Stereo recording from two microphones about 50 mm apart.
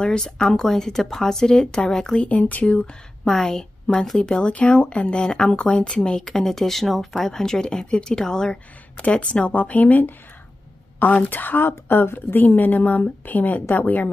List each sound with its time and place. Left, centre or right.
0.0 s speech: centre
2.1 s speech: left
3.3 s speech: centre
9.2 s a woman's voice: left